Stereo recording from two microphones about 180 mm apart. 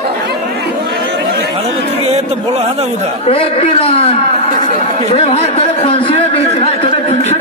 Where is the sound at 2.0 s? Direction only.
35° right (ahead or behind).